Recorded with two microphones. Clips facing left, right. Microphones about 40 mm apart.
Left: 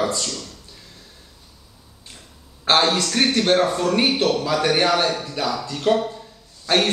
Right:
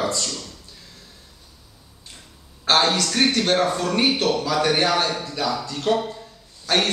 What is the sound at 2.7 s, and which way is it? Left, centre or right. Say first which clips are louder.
Speech: left 1 dB; left.